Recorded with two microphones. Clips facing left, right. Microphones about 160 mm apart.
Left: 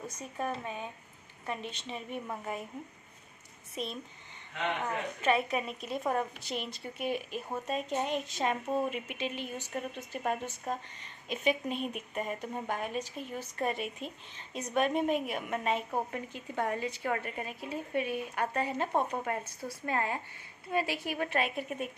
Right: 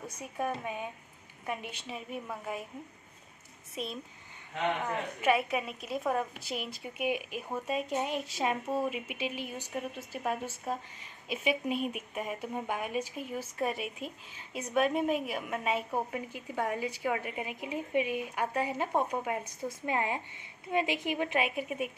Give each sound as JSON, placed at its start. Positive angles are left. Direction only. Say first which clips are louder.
{"t": 0.0, "sound": "a woman's voice", "louder": "right 1 dB", "side_deg": -10}
{"t": 3.7, "sound": "a woman's voice", "louder": "even", "side_deg": 0}
{"t": 5.2, "sound": "a woman's voice", "louder": "right 1 dB", "side_deg": -5}